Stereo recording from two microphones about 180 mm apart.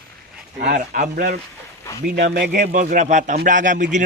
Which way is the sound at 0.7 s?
50° right (ahead or behind).